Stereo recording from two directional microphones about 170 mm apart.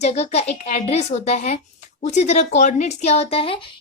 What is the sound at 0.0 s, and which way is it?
Speech, 40° left (ahead or behind).